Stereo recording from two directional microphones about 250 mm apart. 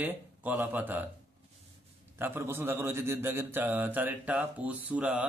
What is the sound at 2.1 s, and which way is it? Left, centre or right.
Speech, centre.